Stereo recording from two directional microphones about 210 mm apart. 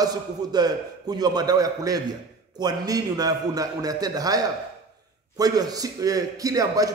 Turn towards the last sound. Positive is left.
turn(degrees=-15)  # may be behind; listen again after turning